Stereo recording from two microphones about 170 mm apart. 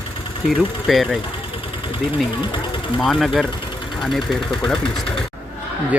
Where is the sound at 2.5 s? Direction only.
30° left (ahead or behind).